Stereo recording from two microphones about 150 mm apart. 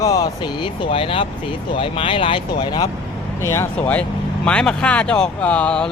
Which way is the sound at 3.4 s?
20° left (ahead or behind).